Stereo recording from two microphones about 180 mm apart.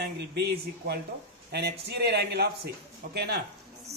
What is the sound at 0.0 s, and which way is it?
Speech, 65° right (ahead or behind).